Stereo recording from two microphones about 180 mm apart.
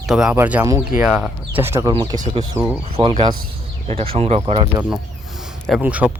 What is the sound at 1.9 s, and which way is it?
Speech, 25° right (ahead or behind).